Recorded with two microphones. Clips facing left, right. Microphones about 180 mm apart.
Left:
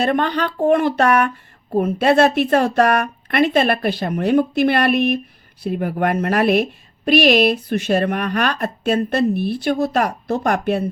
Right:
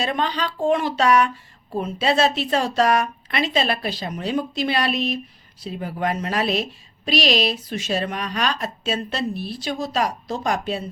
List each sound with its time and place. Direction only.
0.0 s a woman's voice: 55° left (ahead or behind)